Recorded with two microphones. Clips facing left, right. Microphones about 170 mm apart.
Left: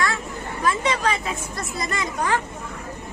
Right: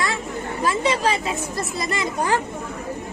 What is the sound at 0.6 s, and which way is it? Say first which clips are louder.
A woman's voice: right 1 dB; 30° right (ahead or behind).